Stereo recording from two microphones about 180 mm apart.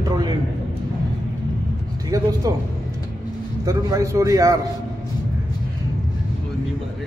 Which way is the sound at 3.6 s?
20° right (ahead or behind).